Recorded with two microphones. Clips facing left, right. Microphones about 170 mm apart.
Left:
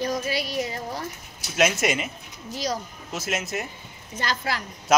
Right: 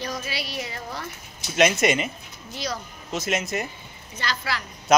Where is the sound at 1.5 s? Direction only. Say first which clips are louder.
Right 3 dB; 5° left (ahead or behind).